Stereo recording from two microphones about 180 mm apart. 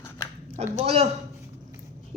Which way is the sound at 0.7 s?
35° right (ahead or behind).